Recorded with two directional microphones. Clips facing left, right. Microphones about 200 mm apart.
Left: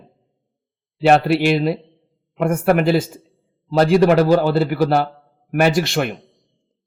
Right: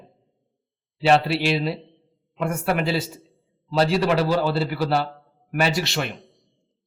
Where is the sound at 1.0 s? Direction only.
50° left (ahead or behind).